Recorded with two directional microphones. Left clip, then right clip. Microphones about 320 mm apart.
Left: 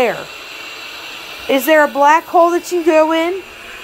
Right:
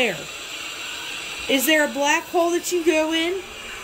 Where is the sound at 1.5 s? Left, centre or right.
Left.